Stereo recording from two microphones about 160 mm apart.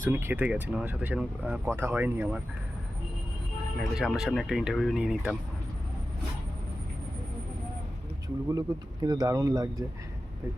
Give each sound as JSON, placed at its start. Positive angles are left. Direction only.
{"t": 0.0, "sound": "speech", "side_deg": -15}
{"t": 3.8, "sound": "speech", "side_deg": 0}
{"t": 8.5, "sound": "speech", "side_deg": -25}